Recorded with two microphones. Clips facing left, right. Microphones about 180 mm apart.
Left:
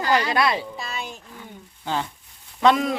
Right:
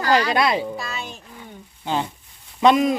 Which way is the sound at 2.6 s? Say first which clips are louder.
Right 3 dB; 15° right (ahead or behind).